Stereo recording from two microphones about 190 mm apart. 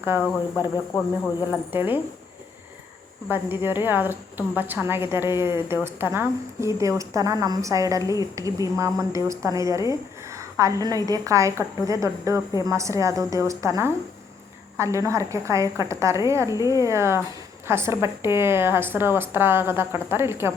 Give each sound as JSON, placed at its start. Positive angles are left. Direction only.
{"t": 0.0, "sound": "speech", "side_deg": -10}
{"t": 1.5, "sound": "a woman's voice", "side_deg": -10}
{"t": 3.2, "sound": "a woman's voice", "side_deg": -10}
{"t": 10.2, "sound": "a sound", "side_deg": -15}
{"t": 10.8, "sound": "a woman's voice", "side_deg": -20}